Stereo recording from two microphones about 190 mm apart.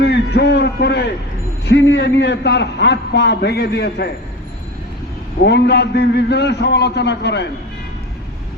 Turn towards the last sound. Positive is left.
turn(degrees=65)  # may be behind; listen again after turning